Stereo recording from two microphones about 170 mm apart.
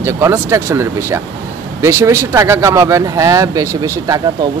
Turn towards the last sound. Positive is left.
turn(degrees=-20)  # may be behind; listen again after turning